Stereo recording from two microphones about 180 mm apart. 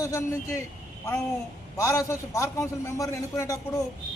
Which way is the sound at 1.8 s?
15° left (ahead or behind).